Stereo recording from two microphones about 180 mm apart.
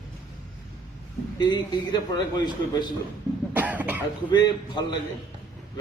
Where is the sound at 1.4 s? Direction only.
25° left (ahead or behind).